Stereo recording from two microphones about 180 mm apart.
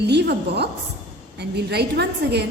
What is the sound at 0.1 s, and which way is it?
A woman's voice, 70° right (ahead or behind).